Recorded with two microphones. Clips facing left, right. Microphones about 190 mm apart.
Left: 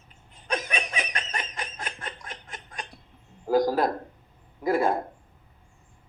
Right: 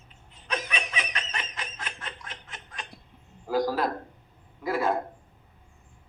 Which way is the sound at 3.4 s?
45° left (ahead or behind).